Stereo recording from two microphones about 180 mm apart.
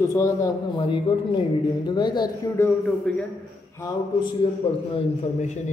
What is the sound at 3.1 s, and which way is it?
Speech, 5° left (ahead or behind).